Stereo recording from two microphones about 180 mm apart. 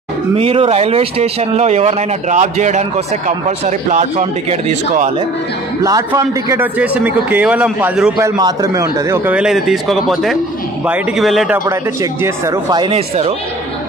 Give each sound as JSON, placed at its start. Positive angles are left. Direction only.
{"t": 0.4, "sound": "speech", "side_deg": -30}
{"t": 5.9, "sound": "a man's voice", "side_deg": -20}
{"t": 8.2, "sound": "a man's voice", "side_deg": -20}
{"t": 11.5, "sound": "speech", "side_deg": -15}